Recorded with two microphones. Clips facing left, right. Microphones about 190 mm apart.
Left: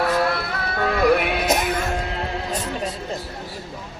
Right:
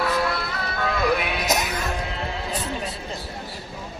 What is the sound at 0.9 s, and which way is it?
Music, 60° left (ahead or behind).